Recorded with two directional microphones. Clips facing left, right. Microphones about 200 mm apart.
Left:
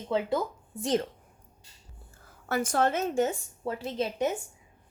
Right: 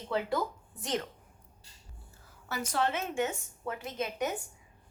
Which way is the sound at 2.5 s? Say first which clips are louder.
Left 5 dB; 50° left (ahead or behind).